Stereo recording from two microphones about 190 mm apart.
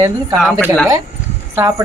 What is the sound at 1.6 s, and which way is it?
Speech, 15° right (ahead or behind).